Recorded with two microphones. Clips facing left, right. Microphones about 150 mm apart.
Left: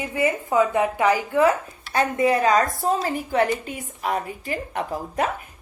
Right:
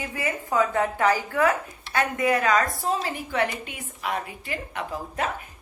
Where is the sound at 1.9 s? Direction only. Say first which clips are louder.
Left 3 dB; 30° left (ahead or behind).